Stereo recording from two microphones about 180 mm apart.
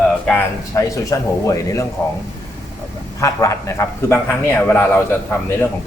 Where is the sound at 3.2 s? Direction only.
15° left (ahead or behind).